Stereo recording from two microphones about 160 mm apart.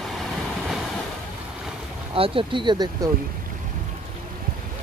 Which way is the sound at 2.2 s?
30° right (ahead or behind).